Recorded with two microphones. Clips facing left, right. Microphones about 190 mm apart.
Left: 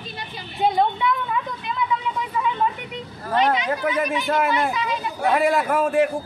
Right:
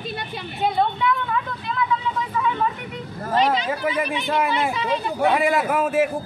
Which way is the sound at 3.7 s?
Centre (ahead or behind).